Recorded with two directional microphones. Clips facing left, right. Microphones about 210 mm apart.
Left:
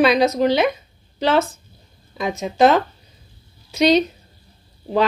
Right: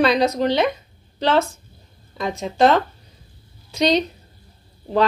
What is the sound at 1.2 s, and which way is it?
Speech, centre (ahead or behind).